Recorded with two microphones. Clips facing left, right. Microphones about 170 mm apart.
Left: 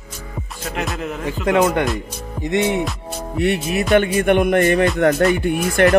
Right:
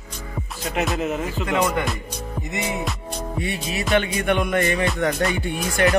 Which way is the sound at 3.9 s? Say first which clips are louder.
Left 6 dB; 50° left (ahead or behind).